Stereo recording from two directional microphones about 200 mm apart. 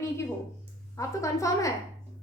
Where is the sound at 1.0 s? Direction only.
15° left (ahead or behind).